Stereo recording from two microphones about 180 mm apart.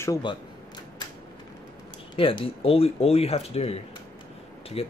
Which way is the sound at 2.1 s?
30° left (ahead or behind).